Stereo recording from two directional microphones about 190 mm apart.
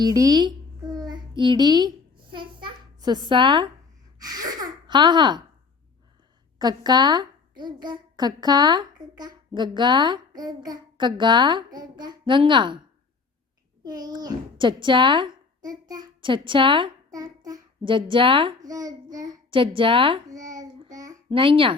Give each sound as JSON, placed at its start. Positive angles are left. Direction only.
{"t": 0.0, "sound": "a sound", "side_deg": -20}
{"t": 2.3, "sound": "babbling", "side_deg": -25}
{"t": 4.2, "sound": "speech", "side_deg": -20}
{"t": 6.6, "sound": "a woman's voice", "side_deg": -20}
{"t": 13.8, "sound": "a child's voice", "side_deg": -20}
{"t": 19.1, "sound": "a sound", "side_deg": -20}
{"t": 21.2, "sound": "a woman's voice", "side_deg": -30}